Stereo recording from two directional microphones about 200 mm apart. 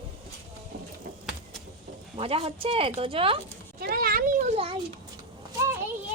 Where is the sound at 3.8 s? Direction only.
50° right (ahead or behind).